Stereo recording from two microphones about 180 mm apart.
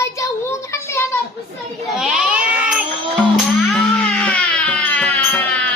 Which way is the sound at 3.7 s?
5° left (ahead or behind).